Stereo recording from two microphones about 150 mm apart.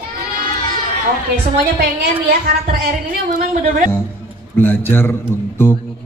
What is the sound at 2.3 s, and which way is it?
Speech, 75° right (ahead or behind).